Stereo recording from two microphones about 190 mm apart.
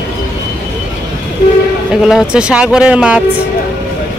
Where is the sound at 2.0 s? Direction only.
5° right (ahead or behind).